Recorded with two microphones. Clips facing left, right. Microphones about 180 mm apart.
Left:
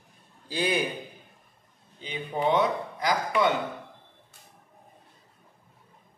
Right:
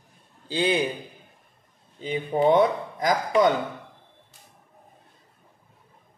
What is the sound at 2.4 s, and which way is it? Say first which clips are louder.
Speech: right 5 dB; 45° right (ahead or behind).